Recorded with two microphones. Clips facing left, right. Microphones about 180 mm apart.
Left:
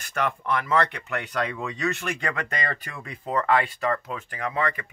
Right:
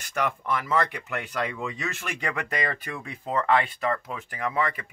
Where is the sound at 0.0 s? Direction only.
15° right (ahead or behind).